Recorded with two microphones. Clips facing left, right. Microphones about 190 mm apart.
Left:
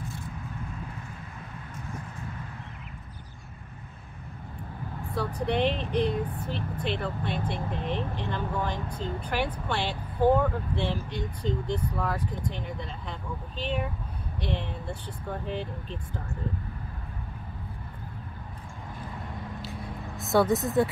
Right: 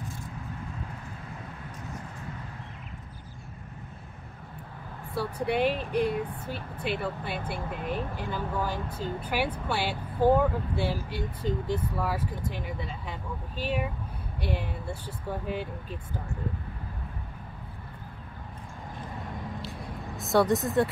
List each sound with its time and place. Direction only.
5.1 s speech: 10° right (ahead or behind)
20.2 s speech: centre (ahead or behind)